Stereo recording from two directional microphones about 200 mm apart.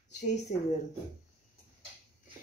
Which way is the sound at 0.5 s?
40° left (ahead or behind).